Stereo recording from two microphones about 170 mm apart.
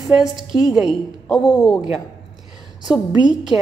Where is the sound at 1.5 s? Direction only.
25° left (ahead or behind).